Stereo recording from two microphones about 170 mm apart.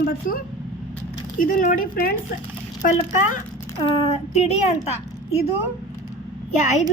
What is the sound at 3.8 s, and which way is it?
Speech, 35° left (ahead or behind).